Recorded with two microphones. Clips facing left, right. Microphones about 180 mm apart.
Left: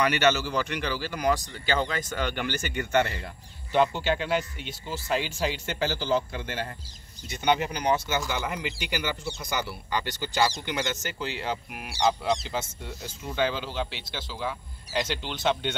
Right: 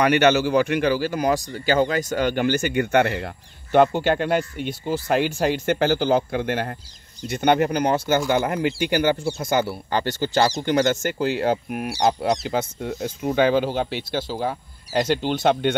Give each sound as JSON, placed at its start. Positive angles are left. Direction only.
{"t": 0.0, "sound": "speech", "side_deg": -55}